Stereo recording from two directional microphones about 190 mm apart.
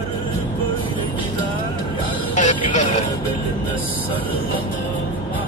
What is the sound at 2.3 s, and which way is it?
Music, 40° left (ahead or behind).